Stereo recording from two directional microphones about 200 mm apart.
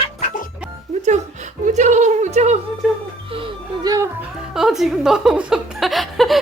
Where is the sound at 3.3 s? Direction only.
20° right (ahead or behind).